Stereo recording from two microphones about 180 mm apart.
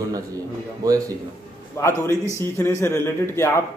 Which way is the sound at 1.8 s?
15° left (ahead or behind).